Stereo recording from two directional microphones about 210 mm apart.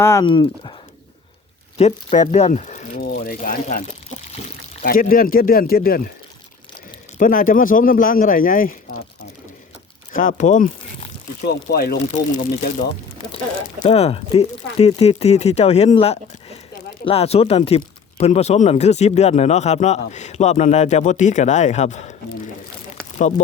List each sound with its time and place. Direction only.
0.0 s speech: 15° left (ahead or behind)
1.8 s speech: 30° left (ahead or behind)
7.2 s speech: 40° left (ahead or behind)
10.1 s speech: 40° left (ahead or behind)
13.8 s speech: 30° left (ahead or behind)